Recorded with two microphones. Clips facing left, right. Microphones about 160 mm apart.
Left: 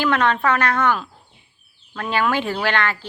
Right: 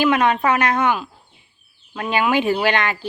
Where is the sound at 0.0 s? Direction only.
15° right (ahead or behind).